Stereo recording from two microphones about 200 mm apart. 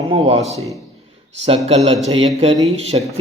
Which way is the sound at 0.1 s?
30° right (ahead or behind).